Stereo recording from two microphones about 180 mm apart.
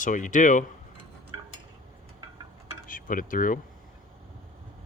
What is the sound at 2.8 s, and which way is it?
Speech, 50° left (ahead or behind).